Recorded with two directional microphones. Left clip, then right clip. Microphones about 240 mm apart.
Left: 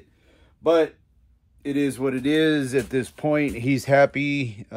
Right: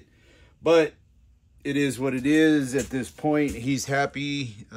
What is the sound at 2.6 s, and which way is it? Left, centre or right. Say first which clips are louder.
Speech: left 4 dB; left.